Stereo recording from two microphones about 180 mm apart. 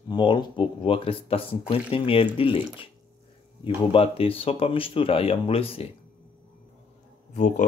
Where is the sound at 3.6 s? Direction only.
30° left (ahead or behind).